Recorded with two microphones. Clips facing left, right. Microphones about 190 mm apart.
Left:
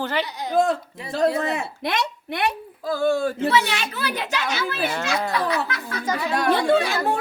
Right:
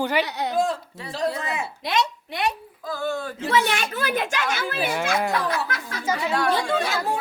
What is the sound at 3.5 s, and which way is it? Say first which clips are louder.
A woman's voice: even; 50° right (ahead or behind).